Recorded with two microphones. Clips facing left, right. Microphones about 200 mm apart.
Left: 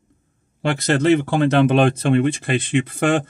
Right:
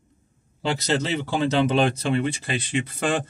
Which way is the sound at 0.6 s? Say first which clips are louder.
Left 7 dB; 55° left (ahead or behind).